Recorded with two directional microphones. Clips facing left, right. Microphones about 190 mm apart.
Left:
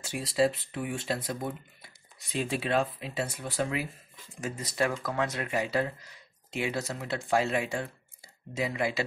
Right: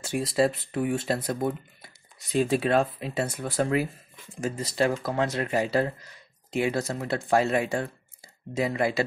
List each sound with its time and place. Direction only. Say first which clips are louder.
0.0 s speech: right 3 dB; 45° right (ahead or behind)
4.4 s speech: right 4 dB; 30° right (ahead or behind)